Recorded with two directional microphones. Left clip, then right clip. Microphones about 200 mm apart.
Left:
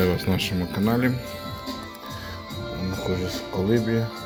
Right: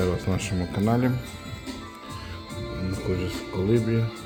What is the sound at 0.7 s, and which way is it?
Speech, 15° right (ahead or behind).